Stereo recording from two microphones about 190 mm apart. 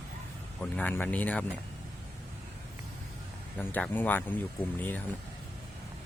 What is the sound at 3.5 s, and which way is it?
Speech, 10° left (ahead or behind).